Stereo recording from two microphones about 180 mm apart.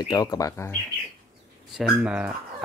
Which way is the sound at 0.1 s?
20° left (ahead or behind).